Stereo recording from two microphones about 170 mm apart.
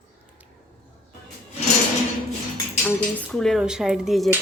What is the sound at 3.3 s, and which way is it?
Speech, 5° left (ahead or behind).